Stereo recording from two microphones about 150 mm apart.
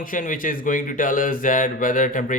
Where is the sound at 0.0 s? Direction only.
65° left (ahead or behind).